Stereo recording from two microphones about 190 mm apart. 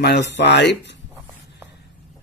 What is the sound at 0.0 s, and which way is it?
Speech, 65° left (ahead or behind).